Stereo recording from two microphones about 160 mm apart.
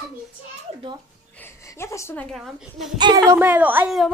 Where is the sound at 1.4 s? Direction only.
15° left (ahead or behind).